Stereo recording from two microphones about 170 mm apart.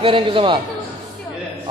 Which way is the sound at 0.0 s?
30° right (ahead or behind).